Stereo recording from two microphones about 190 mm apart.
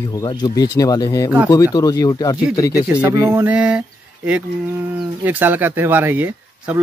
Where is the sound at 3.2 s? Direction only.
15° right (ahead or behind).